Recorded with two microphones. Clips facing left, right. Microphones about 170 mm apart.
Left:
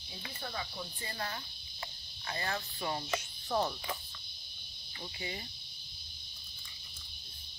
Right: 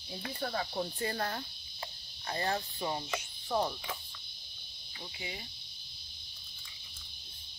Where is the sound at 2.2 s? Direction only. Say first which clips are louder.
Right 4 dB; 35° right (ahead or behind).